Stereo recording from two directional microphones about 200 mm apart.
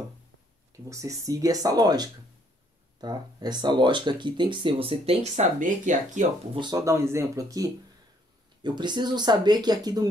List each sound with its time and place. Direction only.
0.8 s speech: 15° right (ahead or behind); by 6.2 s 40° right (ahead or behind)
6.5 s speech: 20° right (ahead or behind)